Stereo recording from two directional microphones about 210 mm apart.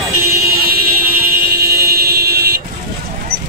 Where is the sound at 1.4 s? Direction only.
50° right (ahead or behind).